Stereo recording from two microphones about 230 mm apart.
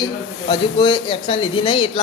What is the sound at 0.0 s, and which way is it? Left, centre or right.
Speech, left.